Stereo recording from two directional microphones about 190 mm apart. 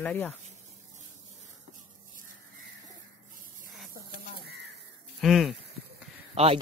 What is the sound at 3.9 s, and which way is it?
Bird, 55° right (ahead or behind).